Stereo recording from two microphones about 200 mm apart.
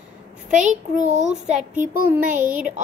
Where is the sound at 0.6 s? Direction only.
35° right (ahead or behind).